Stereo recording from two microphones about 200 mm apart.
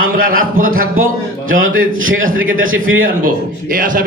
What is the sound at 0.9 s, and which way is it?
A man's voice, 85° right.